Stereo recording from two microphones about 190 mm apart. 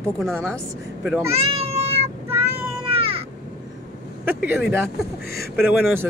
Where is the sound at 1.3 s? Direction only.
35° right (ahead or behind).